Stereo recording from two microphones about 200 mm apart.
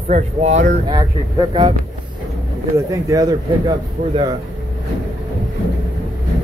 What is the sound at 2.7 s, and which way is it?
A man's voice, 15° right (ahead or behind).